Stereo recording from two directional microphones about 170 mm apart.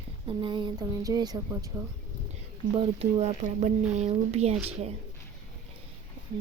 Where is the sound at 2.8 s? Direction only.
40° right (ahead or behind).